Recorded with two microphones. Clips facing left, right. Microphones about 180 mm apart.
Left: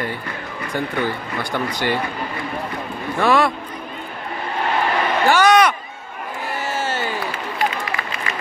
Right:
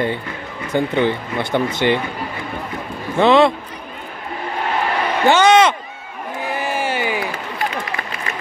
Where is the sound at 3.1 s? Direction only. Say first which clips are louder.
Right 5 dB; 25° right (ahead or behind).